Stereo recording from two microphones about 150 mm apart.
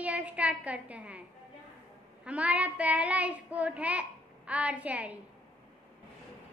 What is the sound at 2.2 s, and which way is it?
Child singing, 10° right (ahead or behind).